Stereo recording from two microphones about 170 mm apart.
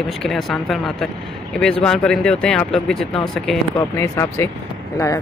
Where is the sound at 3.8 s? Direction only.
15° left (ahead or behind).